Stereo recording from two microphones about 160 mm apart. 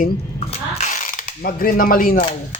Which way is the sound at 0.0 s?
50° left (ahead or behind).